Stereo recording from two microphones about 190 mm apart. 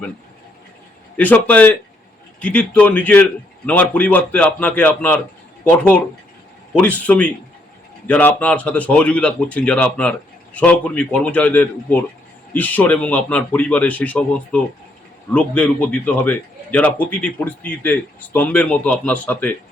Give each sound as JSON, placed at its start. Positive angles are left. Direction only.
{"t": 1.1, "sound": "a man's voice", "side_deg": 10}